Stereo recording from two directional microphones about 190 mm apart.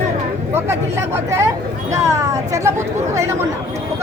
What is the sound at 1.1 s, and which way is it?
Speech, 15° right (ahead or behind).